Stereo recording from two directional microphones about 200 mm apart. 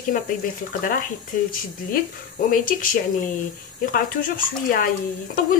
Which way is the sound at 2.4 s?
45° left (ahead or behind).